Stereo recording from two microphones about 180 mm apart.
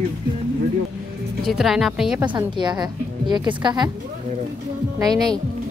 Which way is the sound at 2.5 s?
25° right (ahead or behind).